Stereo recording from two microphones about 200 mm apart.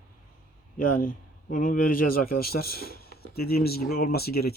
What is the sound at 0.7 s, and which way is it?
A man's voice, 45° left (ahead or behind).